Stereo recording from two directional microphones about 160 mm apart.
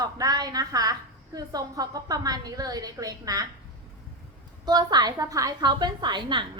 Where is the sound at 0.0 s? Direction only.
25° right (ahead or behind).